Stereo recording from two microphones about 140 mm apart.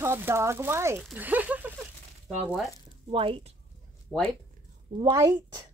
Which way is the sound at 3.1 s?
40° right (ahead or behind).